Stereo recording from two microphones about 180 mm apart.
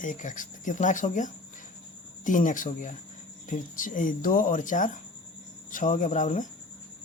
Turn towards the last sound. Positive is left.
turn(degrees=45)  # may be behind; listen again after turning